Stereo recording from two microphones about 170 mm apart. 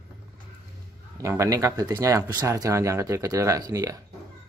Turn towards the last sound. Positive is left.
turn(degrees=-20)  # may be behind; listen again after turning